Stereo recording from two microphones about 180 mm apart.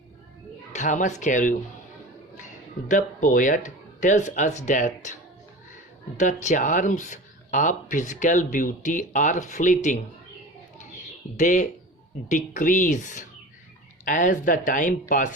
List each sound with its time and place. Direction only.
0.7 s speech: 45° left (ahead or behind)
2.9 s speech: 45° left (ahead or behind)
6.1 s speech: 45° left (ahead or behind)
10.8 s bird: 45° left (ahead or behind)
12.3 s speech: 45° left (ahead or behind)